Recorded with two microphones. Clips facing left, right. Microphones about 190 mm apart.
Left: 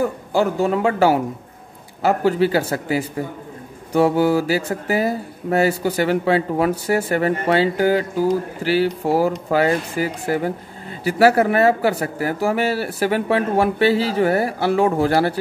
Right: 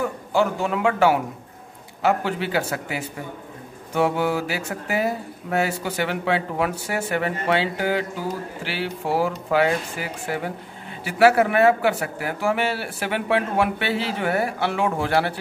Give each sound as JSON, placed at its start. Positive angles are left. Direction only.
{"t": 0.0, "sound": "speech", "side_deg": 35}